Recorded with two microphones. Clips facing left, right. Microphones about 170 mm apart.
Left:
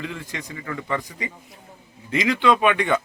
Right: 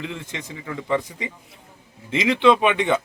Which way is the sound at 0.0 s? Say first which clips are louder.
Even; 20° right (ahead or behind).